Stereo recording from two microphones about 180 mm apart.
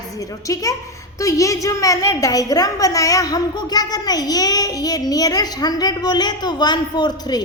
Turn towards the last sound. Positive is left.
turn(degrees=25)  # may be behind; listen again after turning